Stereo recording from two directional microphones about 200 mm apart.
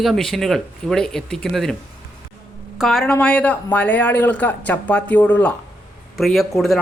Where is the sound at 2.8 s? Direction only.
Centre (ahead or behind).